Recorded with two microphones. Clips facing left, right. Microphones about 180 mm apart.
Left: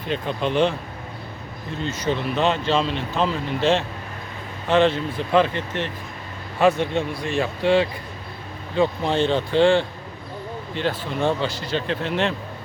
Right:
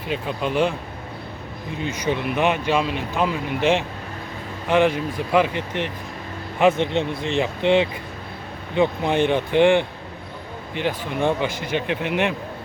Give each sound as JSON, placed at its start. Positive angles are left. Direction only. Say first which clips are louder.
{"t": 0.1, "sound": "speech", "louder": "left 1 dB", "side_deg": -10}
{"t": 1.8, "sound": "speech", "louder": "even", "side_deg": -15}